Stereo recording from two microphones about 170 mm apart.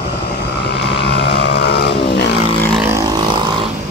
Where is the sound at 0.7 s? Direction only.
90° left.